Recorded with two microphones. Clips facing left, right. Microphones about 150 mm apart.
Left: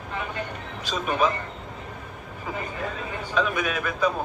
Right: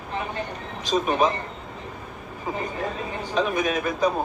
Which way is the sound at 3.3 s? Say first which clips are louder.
Right 2 dB; 40° right (ahead or behind).